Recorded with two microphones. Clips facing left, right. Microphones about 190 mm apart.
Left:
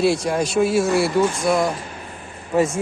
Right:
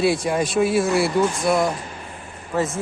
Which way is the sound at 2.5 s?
15° left (ahead or behind).